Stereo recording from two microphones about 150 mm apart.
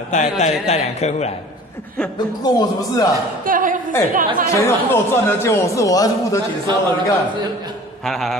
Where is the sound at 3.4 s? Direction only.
65° right (ahead or behind).